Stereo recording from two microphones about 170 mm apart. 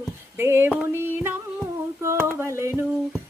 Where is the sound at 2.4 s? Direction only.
15° right (ahead or behind).